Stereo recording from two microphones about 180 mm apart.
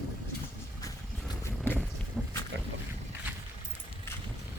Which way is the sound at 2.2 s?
5° left (ahead or behind).